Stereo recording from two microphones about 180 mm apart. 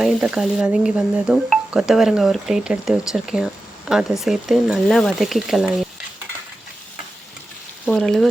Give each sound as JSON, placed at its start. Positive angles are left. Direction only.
{"t": 0.0, "sound": "speech", "side_deg": -5}
{"t": 7.9, "sound": "speech", "side_deg": 0}